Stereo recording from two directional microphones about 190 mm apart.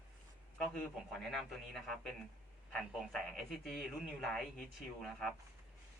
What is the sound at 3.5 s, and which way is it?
Speech, centre (ahead or behind).